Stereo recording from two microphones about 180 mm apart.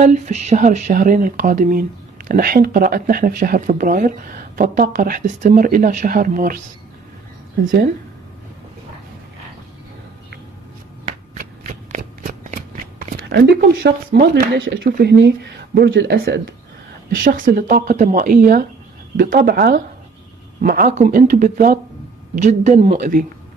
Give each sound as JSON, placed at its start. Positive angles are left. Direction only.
{"t": 0.0, "sound": "speech", "side_deg": -40}
{"t": 11.9, "sound": "speech", "side_deg": -50}
{"t": 17.1, "sound": "speech", "side_deg": -55}